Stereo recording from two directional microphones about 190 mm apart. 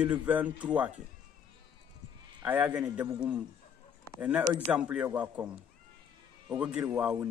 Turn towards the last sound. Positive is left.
turn(degrees=-5)  # may be behind; listen again after turning